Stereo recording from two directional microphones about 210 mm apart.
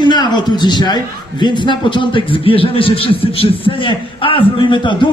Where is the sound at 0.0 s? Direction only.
20° left (ahead or behind).